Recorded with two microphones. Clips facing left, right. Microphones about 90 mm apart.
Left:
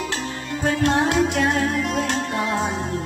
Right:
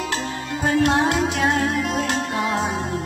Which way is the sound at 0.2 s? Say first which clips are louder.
Even; 55° right (ahead or behind).